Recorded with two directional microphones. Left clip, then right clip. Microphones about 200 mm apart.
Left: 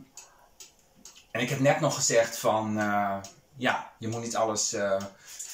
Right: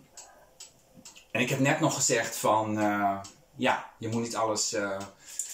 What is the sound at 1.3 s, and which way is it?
Speech, 10° right (ahead or behind).